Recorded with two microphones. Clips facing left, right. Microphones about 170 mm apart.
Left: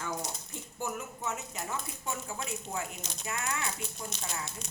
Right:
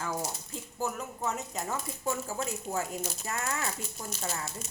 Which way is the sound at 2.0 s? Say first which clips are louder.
Right 6 dB; 40° right (ahead or behind).